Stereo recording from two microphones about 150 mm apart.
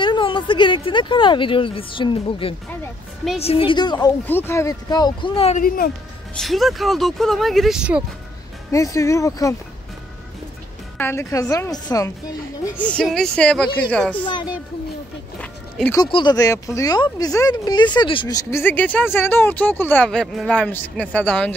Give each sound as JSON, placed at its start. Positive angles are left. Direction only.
{"t": 0.0, "sound": "a woman's voice", "side_deg": 35}
{"t": 4.3, "sound": "speech", "side_deg": 15}
{"t": 6.3, "sound": "speech", "side_deg": 0}
{"t": 8.7, "sound": "speech", "side_deg": 20}
{"t": 11.0, "sound": "speech", "side_deg": 15}
{"t": 12.6, "sound": "speech", "side_deg": 10}
{"t": 14.2, "sound": "a woman's voice", "side_deg": 30}
{"t": 16.0, "sound": "speech", "side_deg": 30}